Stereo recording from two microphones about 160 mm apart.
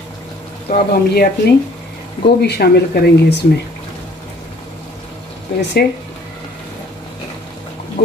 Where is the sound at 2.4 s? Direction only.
90° left.